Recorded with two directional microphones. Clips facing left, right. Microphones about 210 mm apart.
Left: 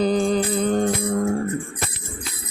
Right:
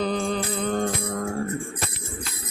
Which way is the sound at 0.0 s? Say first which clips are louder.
Left 6 dB; 35° left (ahead or behind).